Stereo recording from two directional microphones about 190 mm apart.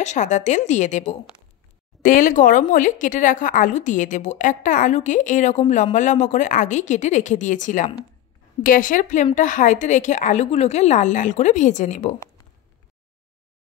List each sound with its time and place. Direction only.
0.0 s a woman's voice: 40° left (ahead or behind)